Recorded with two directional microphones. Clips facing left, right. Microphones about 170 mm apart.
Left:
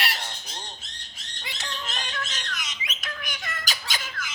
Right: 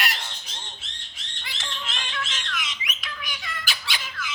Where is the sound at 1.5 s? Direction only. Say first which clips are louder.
Left 1 dB; 40° left (ahead or behind).